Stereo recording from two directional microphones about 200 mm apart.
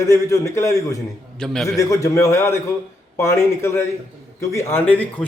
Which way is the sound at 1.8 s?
15° left (ahead or behind).